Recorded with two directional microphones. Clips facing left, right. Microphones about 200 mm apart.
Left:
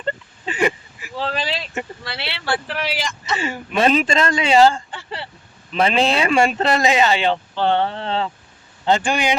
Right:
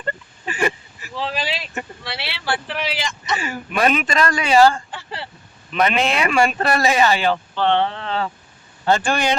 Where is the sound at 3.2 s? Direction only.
30° left (ahead or behind).